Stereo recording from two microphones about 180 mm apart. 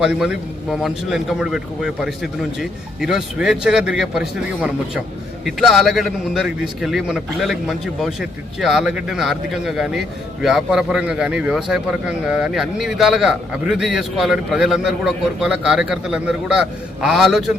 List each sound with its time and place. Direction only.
0.0 s a man's voice: 5° right (ahead or behind)